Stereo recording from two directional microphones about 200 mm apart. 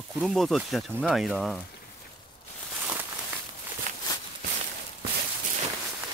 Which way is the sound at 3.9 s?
40° right (ahead or behind).